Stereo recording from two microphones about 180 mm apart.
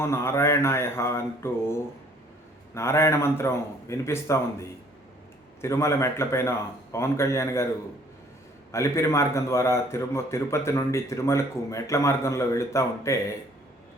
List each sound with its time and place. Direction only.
0.0 s a man's voice: 15° left (ahead or behind)
2.7 s a man's voice: 15° left (ahead or behind)
8.7 s a man's voice: 15° left (ahead or behind)